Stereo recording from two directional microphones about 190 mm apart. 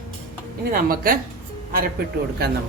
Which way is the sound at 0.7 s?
50° right (ahead or behind).